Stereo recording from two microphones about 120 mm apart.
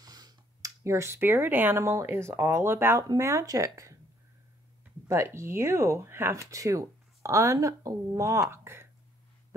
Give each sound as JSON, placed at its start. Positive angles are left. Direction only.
{"t": 0.0, "sound": "speech", "side_deg": -35}
{"t": 5.0, "sound": "speech", "side_deg": -20}